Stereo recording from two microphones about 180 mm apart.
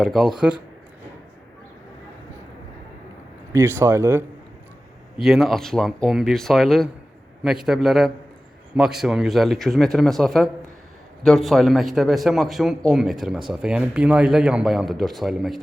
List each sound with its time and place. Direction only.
0.0 s a man's voice: centre (ahead or behind)
3.5 s speech: 15° right (ahead or behind)
5.1 s a man's voice: centre (ahead or behind)